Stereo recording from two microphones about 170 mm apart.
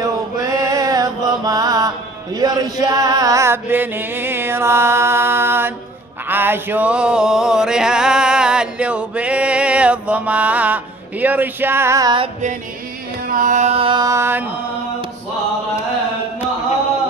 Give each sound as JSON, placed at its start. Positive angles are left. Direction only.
{"t": 0.0, "sound": "mantra", "side_deg": -20}
{"t": 2.3, "sound": "music", "side_deg": -25}
{"t": 13.3, "sound": "mantra", "side_deg": -50}